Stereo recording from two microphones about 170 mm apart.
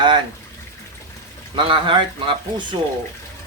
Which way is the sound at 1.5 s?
30° right (ahead or behind).